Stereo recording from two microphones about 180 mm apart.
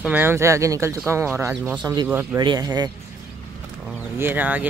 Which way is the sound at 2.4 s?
25° right (ahead or behind).